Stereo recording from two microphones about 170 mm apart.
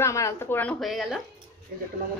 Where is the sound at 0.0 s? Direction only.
15° left (ahead or behind); by 1.2 s centre (ahead or behind).